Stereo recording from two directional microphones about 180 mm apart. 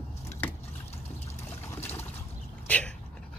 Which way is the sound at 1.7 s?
10° left (ahead or behind).